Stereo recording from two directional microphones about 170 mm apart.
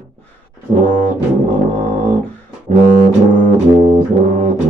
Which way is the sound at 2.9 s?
50° right (ahead or behind).